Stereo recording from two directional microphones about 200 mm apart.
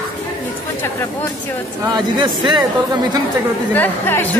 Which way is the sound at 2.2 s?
25° right (ahead or behind).